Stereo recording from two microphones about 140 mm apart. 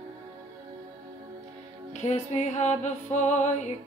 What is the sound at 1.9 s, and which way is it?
Music, 55° left (ahead or behind).